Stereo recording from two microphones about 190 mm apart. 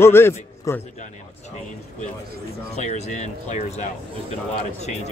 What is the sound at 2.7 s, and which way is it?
Speech, 35° left (ahead or behind).